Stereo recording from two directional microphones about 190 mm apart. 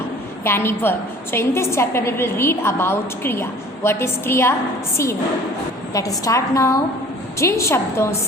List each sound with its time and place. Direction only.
0.4 s a woman's voice: 10° left (ahead or behind)
5.9 s a woman's voice: 15° left (ahead or behind)